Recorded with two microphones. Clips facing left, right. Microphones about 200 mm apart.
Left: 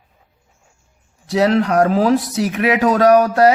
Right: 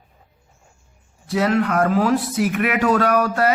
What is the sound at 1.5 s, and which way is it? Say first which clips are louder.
Speech: left 3 dB; 35° left (ahead or behind).